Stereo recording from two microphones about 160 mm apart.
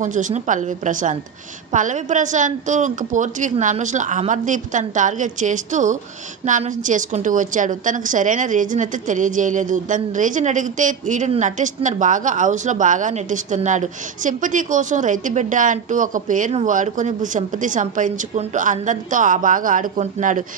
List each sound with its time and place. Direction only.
0.0 s a woman's voice: 50° right (ahead or behind)